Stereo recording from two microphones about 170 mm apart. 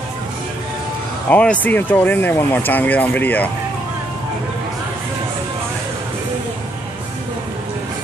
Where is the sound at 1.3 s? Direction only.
10° left (ahead or behind).